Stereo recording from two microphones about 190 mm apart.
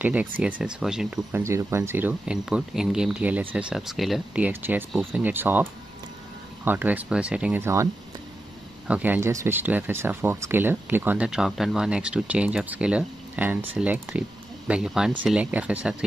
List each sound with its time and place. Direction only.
0.0 s speech: 10° right (ahead or behind)